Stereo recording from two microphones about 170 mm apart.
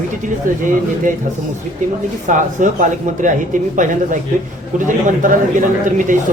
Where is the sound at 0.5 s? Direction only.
50° right (ahead or behind).